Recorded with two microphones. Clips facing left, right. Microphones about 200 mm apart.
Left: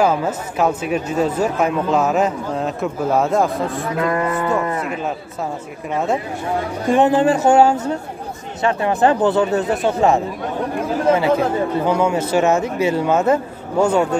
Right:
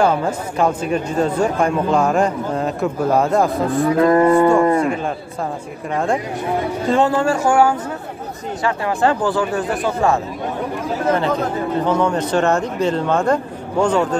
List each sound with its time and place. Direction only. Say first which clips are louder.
0.0 s speech: even; 5° left (ahead or behind)
4.0 s cattle: right 8 dB; 35° right (ahead or behind)
6.9 s speech: left 3 dB; 20° left (ahead or behind)
11.8 s speech: right 2 dB; 10° left (ahead or behind)